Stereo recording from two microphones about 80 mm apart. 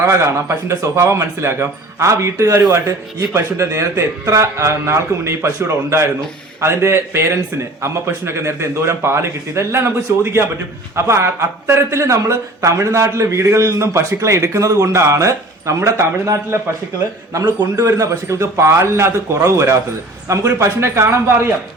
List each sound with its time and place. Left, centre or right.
0.0 s a man's voice: right
17.7 s a man's voice: right